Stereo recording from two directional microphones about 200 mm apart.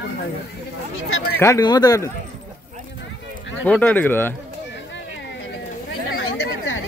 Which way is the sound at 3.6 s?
10° left (ahead or behind).